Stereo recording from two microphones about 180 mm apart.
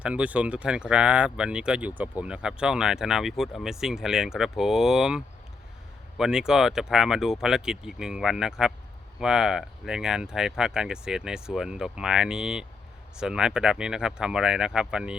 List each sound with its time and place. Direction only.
0.0 s speech: 5° right (ahead or behind)